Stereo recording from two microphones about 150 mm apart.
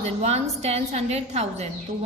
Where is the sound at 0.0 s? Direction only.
45° right (ahead or behind).